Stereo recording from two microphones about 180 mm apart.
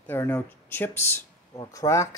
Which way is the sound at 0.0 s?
10° left (ahead or behind).